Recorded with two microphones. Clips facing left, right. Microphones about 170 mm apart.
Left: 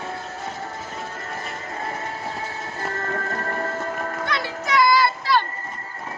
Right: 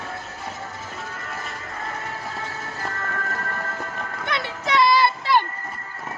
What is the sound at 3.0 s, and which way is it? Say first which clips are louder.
Music: left 3 dB; 35° left (ahead or behind).